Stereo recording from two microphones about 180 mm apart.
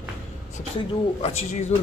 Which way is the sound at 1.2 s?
35° left (ahead or behind).